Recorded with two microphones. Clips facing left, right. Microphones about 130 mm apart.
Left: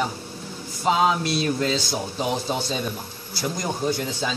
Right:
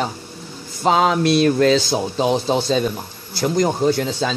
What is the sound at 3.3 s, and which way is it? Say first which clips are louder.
Speech: right 9 dB; 65° right (ahead or behind).